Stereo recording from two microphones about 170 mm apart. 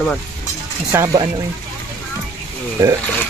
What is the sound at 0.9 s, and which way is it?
Speech, 20° right (ahead or behind).